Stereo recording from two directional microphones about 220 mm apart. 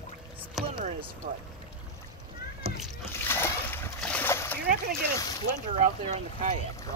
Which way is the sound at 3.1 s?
10° left (ahead or behind).